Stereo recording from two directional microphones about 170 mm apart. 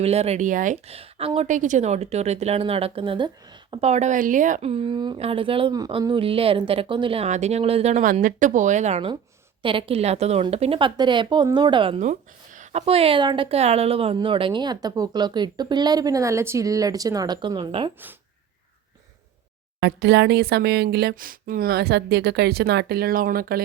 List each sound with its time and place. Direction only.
0.0 s speech: 40° right (ahead or behind)
1.5 s speech: 45° right (ahead or behind); by 3.8 s 30° right (ahead or behind)
3.8 s a woman's voice: 40° right (ahead or behind)
4.7 s speech: 30° right (ahead or behind)
19.8 s speech: 90° right; by 23.6 s 60° right (ahead or behind)